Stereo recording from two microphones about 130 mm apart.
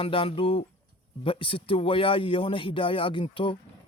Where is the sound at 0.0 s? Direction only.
45° left (ahead or behind).